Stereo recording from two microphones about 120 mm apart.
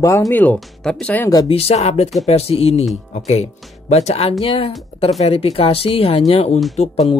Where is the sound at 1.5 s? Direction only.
60° left (ahead or behind).